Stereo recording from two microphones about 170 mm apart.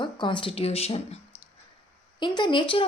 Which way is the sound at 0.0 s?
30° left (ahead or behind).